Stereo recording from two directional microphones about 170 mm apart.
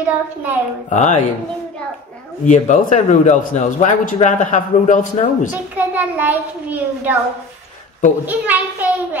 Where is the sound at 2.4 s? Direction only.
45° left (ahead or behind).